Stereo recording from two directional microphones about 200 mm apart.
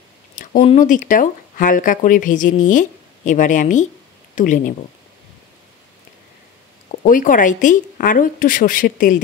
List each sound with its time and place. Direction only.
0.4 s speech: 40° left (ahead or behind)
7.0 s a woman's voice: 45° left (ahead or behind)